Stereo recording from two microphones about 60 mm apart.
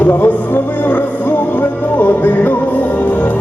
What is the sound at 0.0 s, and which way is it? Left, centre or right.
Music, left.